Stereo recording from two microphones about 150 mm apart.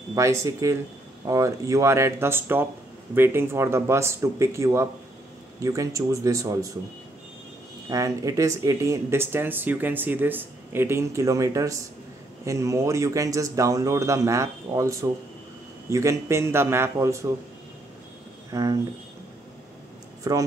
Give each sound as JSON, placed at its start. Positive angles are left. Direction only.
{"t": 0.1, "sound": "speech", "side_deg": -20}
{"t": 7.9, "sound": "speech", "side_deg": -20}
{"t": 18.5, "sound": "speech", "side_deg": -20}
{"t": 20.2, "sound": "speech", "side_deg": -25}